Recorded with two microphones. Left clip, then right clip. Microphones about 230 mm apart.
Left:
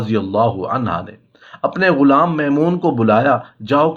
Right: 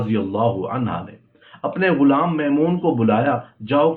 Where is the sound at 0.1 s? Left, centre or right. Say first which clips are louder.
Left 5 dB; left.